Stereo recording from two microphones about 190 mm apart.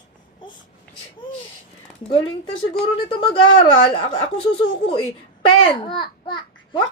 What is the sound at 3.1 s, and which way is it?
A child's voice, 25° left (ahead or behind).